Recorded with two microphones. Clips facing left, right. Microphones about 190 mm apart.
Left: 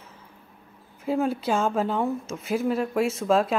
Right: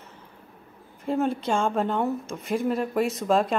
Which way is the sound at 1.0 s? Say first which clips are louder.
Even; 5° left (ahead or behind).